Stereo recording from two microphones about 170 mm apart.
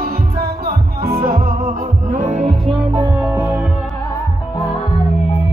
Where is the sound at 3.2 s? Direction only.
15° right (ahead or behind).